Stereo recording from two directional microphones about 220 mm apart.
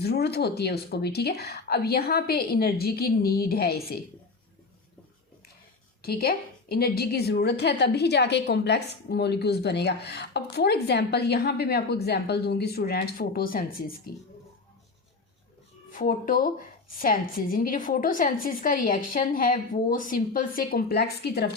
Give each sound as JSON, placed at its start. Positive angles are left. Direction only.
{"t": 0.0, "sound": "a woman's voice", "side_deg": 45}
{"t": 6.0, "sound": "a woman's voice", "side_deg": 45}
{"t": 15.9, "sound": "a woman's voice", "side_deg": 40}